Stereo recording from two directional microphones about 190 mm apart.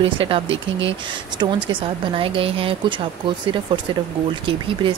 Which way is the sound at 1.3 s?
25° right (ahead or behind).